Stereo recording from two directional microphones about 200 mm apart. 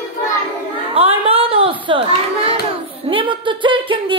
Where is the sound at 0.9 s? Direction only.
30° right (ahead or behind).